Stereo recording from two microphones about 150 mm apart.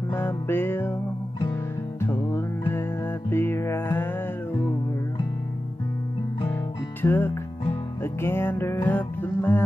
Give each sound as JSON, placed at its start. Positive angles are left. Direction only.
{"t": 0.1, "sound": "music", "side_deg": 15}
{"t": 2.0, "sound": "music", "side_deg": 15}
{"t": 6.4, "sound": "music", "side_deg": 15}